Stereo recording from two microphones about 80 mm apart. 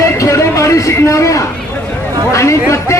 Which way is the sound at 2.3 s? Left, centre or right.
Left.